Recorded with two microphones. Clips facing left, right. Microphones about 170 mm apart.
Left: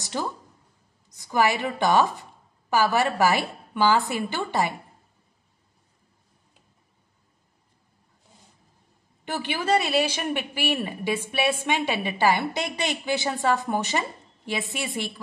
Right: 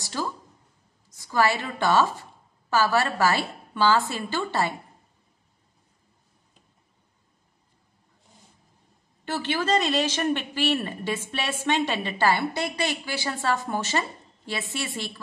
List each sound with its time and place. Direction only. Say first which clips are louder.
0.0 s a sound: left 1 dB; 20° left (ahead or behind)
1.0 s a woman's voice: left 1 dB; 20° left (ahead or behind)
9.2 s a woman's voice: right 2 dB; 15° left (ahead or behind)